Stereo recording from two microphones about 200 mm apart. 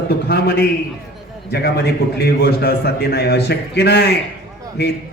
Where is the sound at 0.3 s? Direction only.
55° left (ahead or behind).